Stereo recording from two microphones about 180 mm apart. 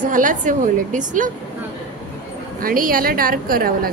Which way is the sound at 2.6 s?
50° right (ahead or behind).